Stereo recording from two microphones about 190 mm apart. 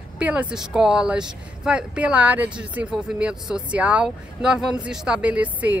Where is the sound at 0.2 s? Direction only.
5° right (ahead or behind).